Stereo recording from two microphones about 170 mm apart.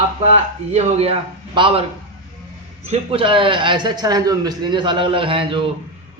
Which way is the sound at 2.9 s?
35° right (ahead or behind).